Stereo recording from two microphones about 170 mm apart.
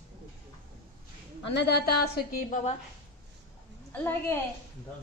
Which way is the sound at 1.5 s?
80° left.